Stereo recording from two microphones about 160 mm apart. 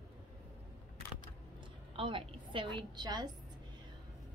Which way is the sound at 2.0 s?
35° right (ahead or behind).